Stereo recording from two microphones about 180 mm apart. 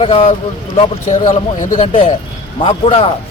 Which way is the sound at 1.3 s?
45° left (ahead or behind).